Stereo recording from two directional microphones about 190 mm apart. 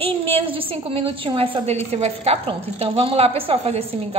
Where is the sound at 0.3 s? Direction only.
30° right (ahead or behind).